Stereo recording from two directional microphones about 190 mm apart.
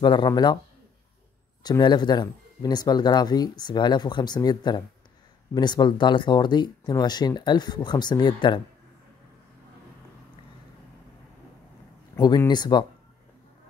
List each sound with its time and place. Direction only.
0.0 s speech: 25° left (ahead or behind)
1.6 s speech: 20° left (ahead or behind)
12.2 s speech: 20° left (ahead or behind)